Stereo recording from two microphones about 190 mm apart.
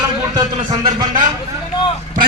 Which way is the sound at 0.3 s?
20° right (ahead or behind).